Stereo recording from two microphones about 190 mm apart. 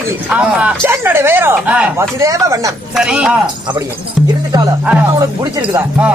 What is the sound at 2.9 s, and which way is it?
Speech, 5° right (ahead or behind).